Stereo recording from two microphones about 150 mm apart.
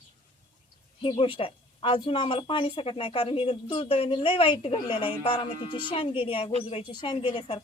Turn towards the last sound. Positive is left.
turn(degrees=35)  # may be behind; listen again after turning